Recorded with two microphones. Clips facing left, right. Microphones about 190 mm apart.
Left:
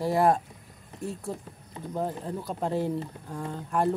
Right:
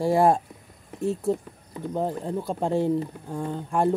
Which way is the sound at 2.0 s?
25° right (ahead or behind).